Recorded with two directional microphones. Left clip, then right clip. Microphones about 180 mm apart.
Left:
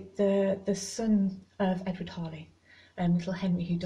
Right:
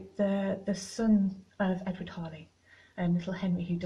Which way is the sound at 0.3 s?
50° left (ahead or behind).